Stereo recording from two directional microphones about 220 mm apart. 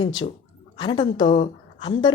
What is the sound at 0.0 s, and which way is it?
A woman's voice, 20° left (ahead or behind).